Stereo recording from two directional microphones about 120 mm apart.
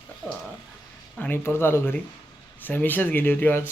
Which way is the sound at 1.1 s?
15° left (ahead or behind).